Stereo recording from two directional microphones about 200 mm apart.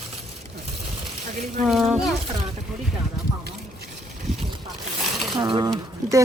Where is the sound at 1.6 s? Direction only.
5° right (ahead or behind).